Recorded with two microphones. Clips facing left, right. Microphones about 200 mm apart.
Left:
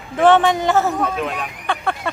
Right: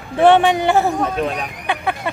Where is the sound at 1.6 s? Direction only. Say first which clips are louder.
Right 1 dB; 5° right (ahead or behind).